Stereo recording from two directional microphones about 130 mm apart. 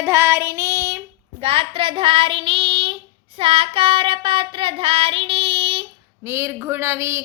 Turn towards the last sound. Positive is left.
turn(degrees=-20)  # may be behind; listen again after turning